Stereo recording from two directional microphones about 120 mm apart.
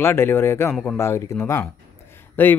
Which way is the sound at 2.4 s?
15° left (ahead or behind).